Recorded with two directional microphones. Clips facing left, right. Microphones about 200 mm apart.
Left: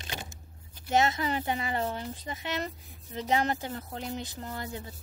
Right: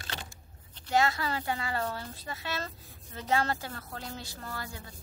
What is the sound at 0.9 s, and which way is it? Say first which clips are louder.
Speech: left 2 dB; 20° left (ahead or behind).